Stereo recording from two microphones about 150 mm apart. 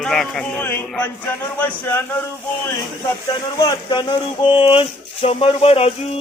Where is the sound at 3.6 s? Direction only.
25° left (ahead or behind); by 6.1 s 45° left (ahead or behind).